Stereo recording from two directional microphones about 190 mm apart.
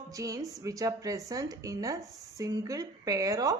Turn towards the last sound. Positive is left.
turn(degrees=-20)  # may be behind; listen again after turning